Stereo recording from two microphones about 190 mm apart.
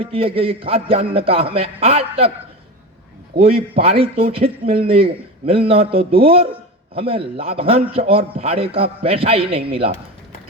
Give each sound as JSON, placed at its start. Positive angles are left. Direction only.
{"t": 0.0, "sound": "a man's voice", "side_deg": -30}
{"t": 3.3, "sound": "speech", "side_deg": -30}